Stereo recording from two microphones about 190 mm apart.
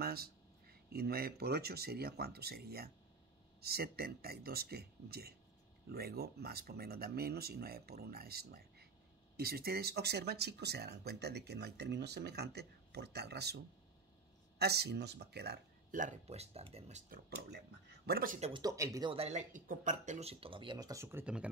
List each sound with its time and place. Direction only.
0.0 s speech: 55° right (ahead or behind); by 17.0 s 35° right (ahead or behind)
18.0 s speech: 50° right (ahead or behind)
18.5 s speech: 20° right (ahead or behind)
19.1 s speech: 35° right (ahead or behind); by 21.5 s 10° right (ahead or behind)